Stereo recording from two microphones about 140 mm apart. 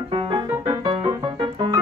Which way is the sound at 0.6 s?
30° right (ahead or behind).